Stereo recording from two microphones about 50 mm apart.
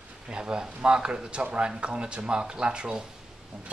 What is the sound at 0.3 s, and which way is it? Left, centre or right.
Speech, centre.